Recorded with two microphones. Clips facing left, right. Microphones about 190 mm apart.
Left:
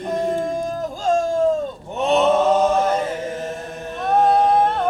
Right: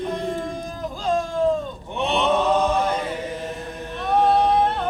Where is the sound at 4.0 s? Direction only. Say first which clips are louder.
Left 2 dB; 45° left (ahead or behind).